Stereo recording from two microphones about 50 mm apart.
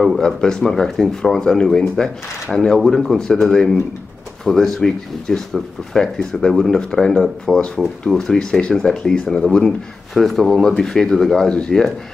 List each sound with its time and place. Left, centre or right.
0.2 s speech: centre